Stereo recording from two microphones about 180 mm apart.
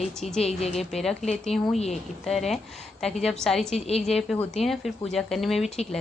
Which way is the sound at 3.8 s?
35° left (ahead or behind).